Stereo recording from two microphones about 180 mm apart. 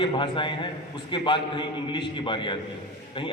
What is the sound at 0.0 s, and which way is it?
A man's voice, 25° left (ahead or behind).